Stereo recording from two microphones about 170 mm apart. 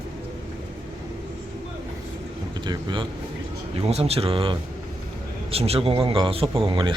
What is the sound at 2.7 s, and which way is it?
Speech, 30° right (ahead or behind).